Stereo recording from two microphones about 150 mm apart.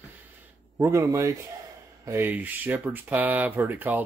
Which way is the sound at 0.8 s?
20° right (ahead or behind).